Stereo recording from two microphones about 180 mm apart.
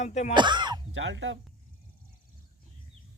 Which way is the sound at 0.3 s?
25° right (ahead or behind).